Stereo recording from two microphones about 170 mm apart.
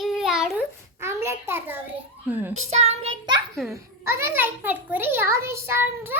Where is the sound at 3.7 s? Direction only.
15° right (ahead or behind).